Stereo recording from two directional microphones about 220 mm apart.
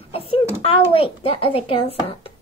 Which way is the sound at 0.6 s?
25° left (ahead or behind).